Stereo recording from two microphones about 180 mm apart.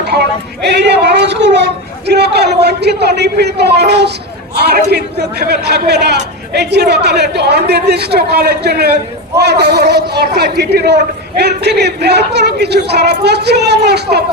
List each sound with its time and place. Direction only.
0.0 s a man's voice: 65° right (ahead or behind)